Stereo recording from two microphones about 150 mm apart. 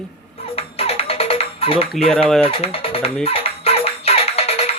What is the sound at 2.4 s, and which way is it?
Speech, 40° left (ahead or behind).